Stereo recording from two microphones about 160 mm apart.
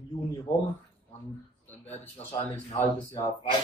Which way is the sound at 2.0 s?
10° left (ahead or behind).